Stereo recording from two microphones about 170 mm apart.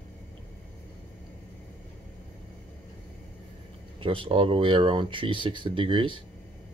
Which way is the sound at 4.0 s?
30° right (ahead or behind).